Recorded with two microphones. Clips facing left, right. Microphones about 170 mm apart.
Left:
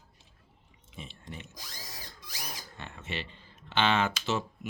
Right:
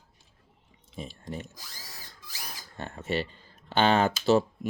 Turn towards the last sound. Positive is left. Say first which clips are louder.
# right 7 dB
turn(degrees=-35)  # may be behind; listen again after turning